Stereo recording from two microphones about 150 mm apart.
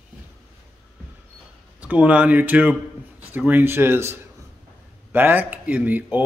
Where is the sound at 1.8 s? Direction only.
10° right (ahead or behind).